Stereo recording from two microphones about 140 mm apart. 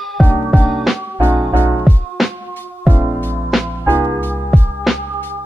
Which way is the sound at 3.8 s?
15° right (ahead or behind).